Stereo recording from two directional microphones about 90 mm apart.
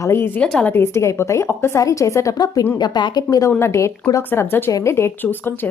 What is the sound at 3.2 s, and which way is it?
A woman's voice, 40° left (ahead or behind).